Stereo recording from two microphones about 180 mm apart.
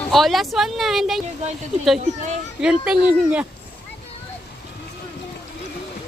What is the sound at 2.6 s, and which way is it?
Speech, 5° right (ahead or behind).